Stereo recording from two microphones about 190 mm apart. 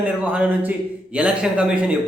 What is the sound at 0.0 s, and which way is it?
A man's voice, 5° right (ahead or behind).